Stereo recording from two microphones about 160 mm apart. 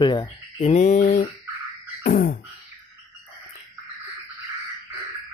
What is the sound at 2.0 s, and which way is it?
Beatboxing, 60° left (ahead or behind).